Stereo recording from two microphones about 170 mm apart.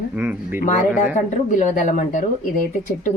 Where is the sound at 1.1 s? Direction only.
45° left (ahead or behind).